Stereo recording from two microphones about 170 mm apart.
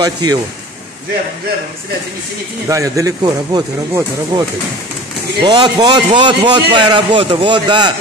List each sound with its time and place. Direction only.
0.0 s speech: 20° right (ahead or behind)
2.7 s speech: 20° right (ahead or behind)